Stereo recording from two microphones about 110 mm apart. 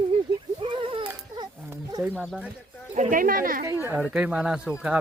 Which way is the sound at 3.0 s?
90° right.